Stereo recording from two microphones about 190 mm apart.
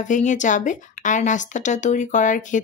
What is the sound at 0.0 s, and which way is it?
Speech, 40° left (ahead or behind).